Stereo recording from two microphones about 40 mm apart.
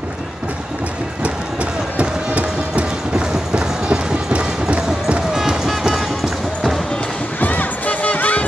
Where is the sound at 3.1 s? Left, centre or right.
Centre.